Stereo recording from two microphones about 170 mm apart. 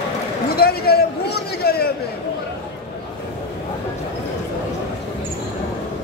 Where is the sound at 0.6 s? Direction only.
65° left (ahead or behind).